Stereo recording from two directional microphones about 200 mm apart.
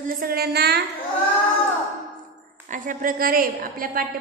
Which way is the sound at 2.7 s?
40° right (ahead or behind).